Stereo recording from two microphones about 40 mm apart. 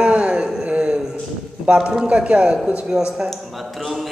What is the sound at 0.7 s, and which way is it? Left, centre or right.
Speech, right.